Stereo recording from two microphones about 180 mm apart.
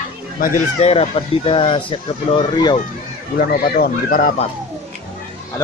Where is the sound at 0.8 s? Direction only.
35° left (ahead or behind).